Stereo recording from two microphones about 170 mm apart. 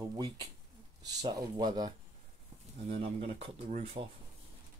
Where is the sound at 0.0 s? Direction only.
20° right (ahead or behind).